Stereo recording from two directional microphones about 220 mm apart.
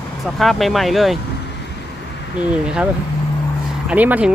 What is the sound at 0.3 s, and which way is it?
Speech, centre (ahead or behind).